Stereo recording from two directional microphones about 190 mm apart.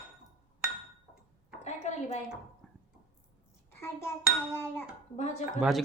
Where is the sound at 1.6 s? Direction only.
35° left (ahead or behind).